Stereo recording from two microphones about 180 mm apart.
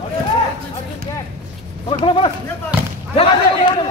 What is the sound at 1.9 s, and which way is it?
Speech, 30° left (ahead or behind).